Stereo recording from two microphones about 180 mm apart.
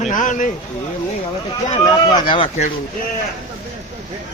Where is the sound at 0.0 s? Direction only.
45° left (ahead or behind).